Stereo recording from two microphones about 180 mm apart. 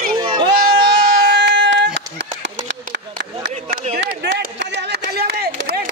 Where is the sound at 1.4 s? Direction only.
80° right.